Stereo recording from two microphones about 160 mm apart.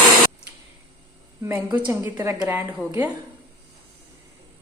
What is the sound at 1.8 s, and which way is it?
Speech, 15° right (ahead or behind).